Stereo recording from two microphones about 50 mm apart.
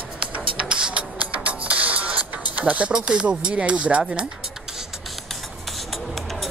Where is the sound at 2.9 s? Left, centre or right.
Centre.